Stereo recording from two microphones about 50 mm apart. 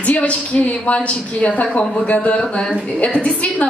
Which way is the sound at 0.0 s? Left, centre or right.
Left.